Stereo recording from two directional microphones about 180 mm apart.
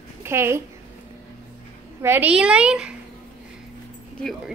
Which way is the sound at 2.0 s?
10° right (ahead or behind).